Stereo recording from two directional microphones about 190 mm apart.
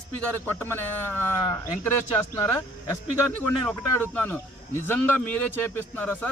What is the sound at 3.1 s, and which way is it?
A man's voice, 10° left (ahead or behind).